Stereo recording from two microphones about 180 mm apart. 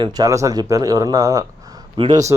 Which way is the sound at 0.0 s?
20° right (ahead or behind).